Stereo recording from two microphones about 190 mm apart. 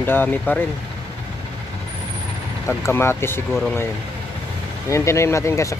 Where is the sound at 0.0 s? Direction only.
10° left (ahead or behind).